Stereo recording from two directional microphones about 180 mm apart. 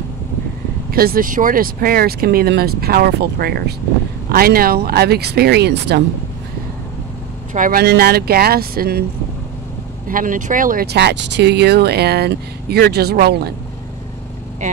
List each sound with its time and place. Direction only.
0.9 s speech: 55° right (ahead or behind)
7.5 s speech: 50° right (ahead or behind)
10.0 s speech: 50° right (ahead or behind)